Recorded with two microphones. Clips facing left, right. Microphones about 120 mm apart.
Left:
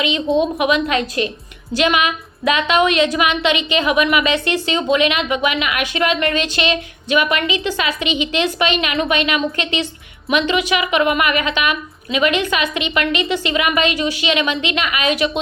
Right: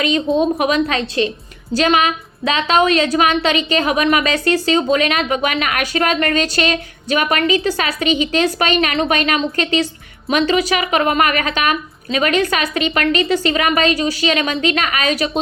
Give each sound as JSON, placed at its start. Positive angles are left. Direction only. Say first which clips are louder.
{"t": 0.3, "sound": "a woman's voice", "louder": "left 1 dB", "side_deg": 0}
{"t": 0.6, "sound": "a woman's voice", "louder": "even", "side_deg": -35}